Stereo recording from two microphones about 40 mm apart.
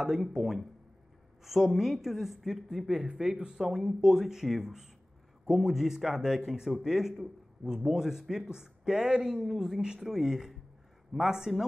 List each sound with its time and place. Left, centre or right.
0.0 s speech: centre
0.4 s a woman's voice: centre